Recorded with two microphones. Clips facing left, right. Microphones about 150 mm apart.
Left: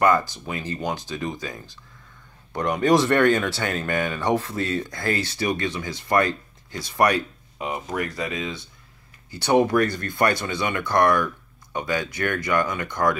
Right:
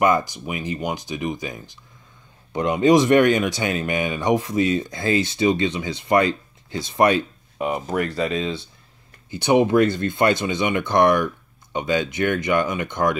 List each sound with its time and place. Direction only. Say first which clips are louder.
0.0 s speech: right 1 dB; 15° right (ahead or behind)